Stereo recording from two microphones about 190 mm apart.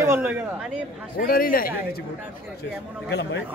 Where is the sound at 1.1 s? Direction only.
50° left (ahead or behind).